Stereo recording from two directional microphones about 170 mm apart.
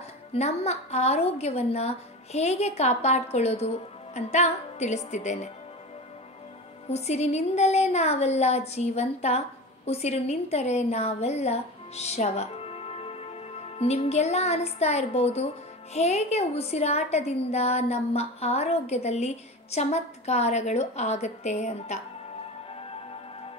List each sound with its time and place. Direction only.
0.3 s a woman's voice: 40° left (ahead or behind)
6.9 s a woman's voice: 40° left (ahead or behind)